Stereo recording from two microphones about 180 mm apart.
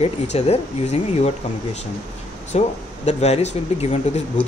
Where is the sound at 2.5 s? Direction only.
35° left (ahead or behind).